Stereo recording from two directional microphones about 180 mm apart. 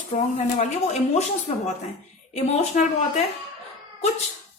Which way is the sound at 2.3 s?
40° left (ahead or behind).